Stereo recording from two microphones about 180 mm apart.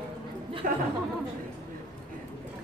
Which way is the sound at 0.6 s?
45° right (ahead or behind).